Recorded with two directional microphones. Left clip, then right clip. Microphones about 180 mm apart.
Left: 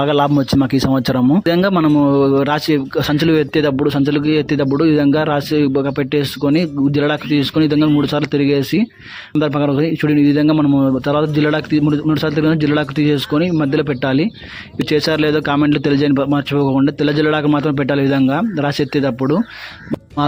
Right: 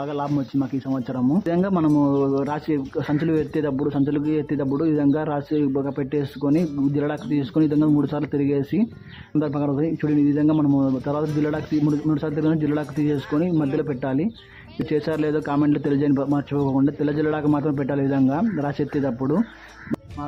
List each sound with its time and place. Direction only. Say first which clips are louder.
0.0 s speech: left 12 dB; 45° left (ahead or behind); by 19.4 s 30° left (ahead or behind)